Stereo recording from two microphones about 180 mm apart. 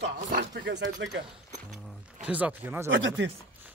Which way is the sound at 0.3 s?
70° right (ahead or behind).